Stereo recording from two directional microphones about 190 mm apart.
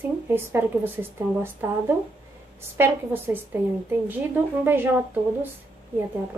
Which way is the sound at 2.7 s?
10° right (ahead or behind).